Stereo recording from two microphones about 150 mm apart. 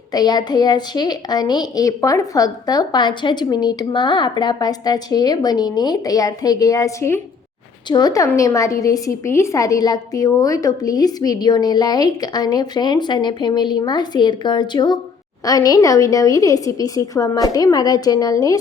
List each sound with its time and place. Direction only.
0.1 s a woman's voice: 25° left (ahead or behind)